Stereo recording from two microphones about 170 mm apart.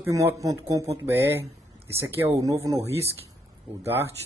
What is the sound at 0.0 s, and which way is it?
Speech, 15° right (ahead or behind).